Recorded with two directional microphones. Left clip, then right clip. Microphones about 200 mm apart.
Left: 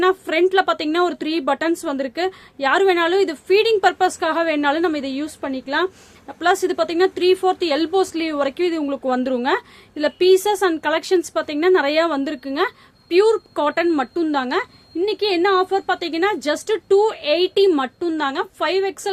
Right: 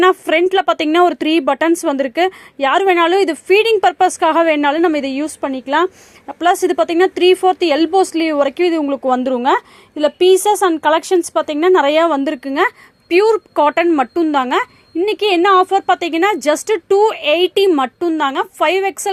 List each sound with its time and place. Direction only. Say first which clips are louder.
0.0 s a woman's voice: right 5 dB; 30° right (ahead or behind)